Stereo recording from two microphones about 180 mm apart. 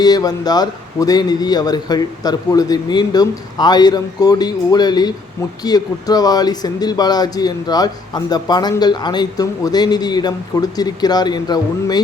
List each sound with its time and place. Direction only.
0.0 s speech: 20° left (ahead or behind)